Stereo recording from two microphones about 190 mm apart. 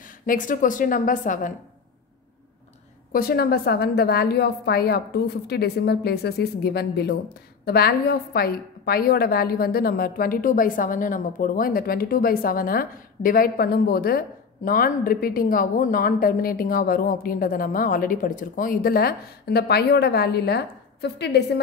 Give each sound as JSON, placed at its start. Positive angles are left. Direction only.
{"t": 0.3, "sound": "a woman's voice", "side_deg": 45}
{"t": 3.1, "sound": "a woman's voice", "side_deg": 50}